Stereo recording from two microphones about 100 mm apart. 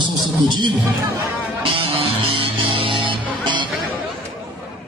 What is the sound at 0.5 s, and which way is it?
Speech, 50° right (ahead or behind).